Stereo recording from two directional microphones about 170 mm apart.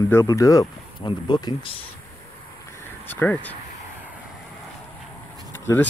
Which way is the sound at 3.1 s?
10° left (ahead or behind).